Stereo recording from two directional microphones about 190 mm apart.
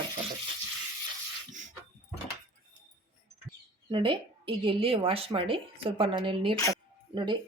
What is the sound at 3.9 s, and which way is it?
A woman's voice, 25° right (ahead or behind).